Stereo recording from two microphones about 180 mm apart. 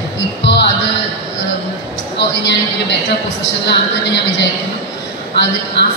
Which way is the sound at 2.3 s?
75° left (ahead or behind).